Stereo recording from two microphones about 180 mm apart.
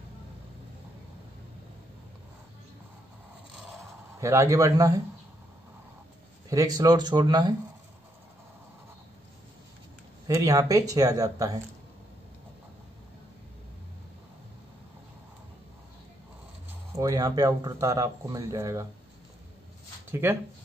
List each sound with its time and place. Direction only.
4.2 s speech: 15° right (ahead or behind)
6.5 s speech: 20° right (ahead or behind)
10.2 s speech: 20° right (ahead or behind)
16.9 s speech: 20° right (ahead or behind)
20.1 s speech: 10° right (ahead or behind)